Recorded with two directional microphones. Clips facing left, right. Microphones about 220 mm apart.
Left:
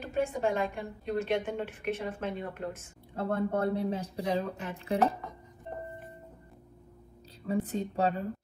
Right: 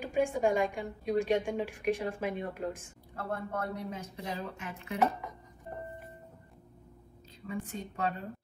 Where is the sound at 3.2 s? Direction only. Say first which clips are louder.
Left 7 dB; 30° left (ahead or behind).